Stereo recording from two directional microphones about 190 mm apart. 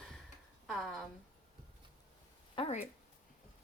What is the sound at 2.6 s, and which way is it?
Speech, 35° left (ahead or behind).